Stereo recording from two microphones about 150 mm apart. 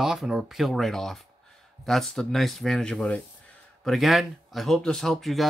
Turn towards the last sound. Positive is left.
turn(degrees=0)  # may be behind; listen again after turning